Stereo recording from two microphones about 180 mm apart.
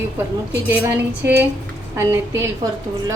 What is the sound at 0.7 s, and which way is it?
Speech, 10° right (ahead or behind).